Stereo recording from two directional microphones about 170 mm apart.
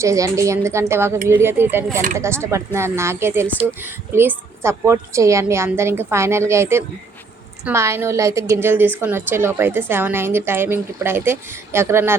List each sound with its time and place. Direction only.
0.0 s a woman's voice: 20° right (ahead or behind)